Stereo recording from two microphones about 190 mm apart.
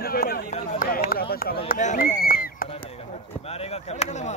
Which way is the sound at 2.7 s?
30° left (ahead or behind).